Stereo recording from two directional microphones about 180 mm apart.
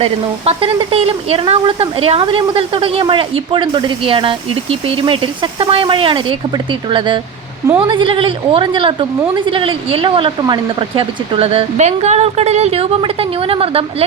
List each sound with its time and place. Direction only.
0.0 s speech: 30° right (ahead or behind)